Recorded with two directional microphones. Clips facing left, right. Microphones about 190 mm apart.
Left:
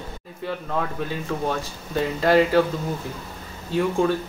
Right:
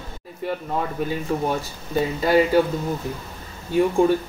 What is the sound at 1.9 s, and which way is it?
Speech, 10° right (ahead or behind).